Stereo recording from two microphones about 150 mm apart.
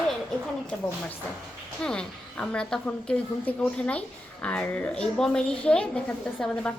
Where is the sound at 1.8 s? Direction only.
5° left (ahead or behind).